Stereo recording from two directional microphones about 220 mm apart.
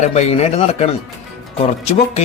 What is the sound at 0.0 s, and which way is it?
Speech, 30° left (ahead or behind).